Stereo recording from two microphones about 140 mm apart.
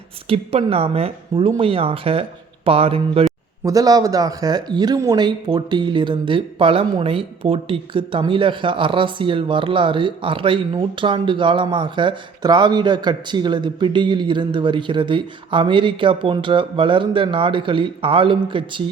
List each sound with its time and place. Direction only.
0.3 s speech: 45° right (ahead or behind)
3.6 s speech: 25° right (ahead or behind)